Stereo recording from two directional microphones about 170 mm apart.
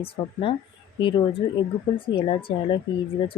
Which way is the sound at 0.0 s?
35° left (ahead or behind).